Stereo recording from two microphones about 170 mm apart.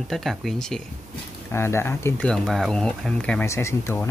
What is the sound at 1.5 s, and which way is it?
Speech, 15° left (ahead or behind).